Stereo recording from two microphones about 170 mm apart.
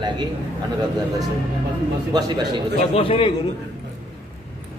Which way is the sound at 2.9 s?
30° left (ahead or behind).